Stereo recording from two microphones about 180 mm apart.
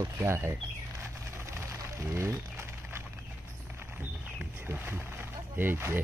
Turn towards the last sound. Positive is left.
turn(degrees=-10)  # may be behind; listen again after turning